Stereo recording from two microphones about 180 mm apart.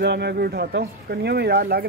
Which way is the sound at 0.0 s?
65° right (ahead or behind).